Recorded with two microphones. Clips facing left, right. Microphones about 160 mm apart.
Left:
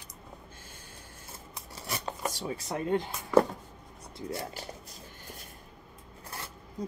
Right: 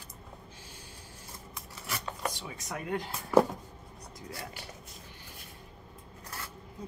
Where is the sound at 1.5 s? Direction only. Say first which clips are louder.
Left 2 dB; 35° left (ahead or behind).